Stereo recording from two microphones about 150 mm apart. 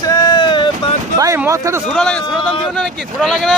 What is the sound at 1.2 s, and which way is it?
Speech, 20° right (ahead or behind).